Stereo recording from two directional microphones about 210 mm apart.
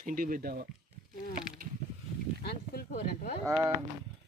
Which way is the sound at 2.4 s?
50° left (ahead or behind).